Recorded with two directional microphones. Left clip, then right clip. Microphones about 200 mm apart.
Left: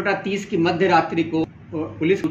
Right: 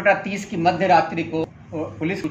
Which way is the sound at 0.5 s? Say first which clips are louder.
Right 1 dB; centre (ahead or behind).